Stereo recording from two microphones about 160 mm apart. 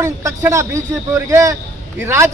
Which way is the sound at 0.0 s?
20° right (ahead or behind).